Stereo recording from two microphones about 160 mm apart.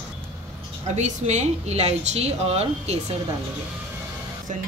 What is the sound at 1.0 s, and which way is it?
A woman's voice, 45° right (ahead or behind).